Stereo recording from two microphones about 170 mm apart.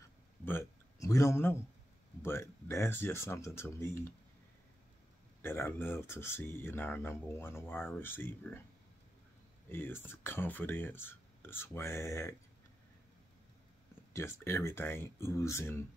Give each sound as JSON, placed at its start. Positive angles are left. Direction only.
{"t": 0.5, "sound": "a man's voice", "side_deg": 15}
{"t": 5.4, "sound": "speech", "side_deg": 15}
{"t": 9.7, "sound": "speech", "side_deg": 15}
{"t": 14.1, "sound": "speech", "side_deg": 15}